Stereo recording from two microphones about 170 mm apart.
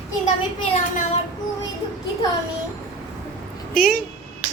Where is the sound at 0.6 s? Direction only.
35° left (ahead or behind).